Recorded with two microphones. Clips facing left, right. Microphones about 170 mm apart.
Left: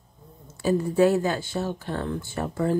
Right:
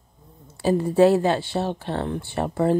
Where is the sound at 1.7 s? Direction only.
25° right (ahead or behind).